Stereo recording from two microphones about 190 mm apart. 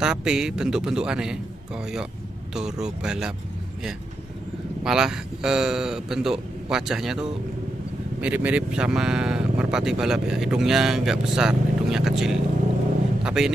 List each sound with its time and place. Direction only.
0.0 s speech: 5° right (ahead or behind)
2.5 s speech: 5° right (ahead or behind)
4.8 s speech: 5° right (ahead or behind)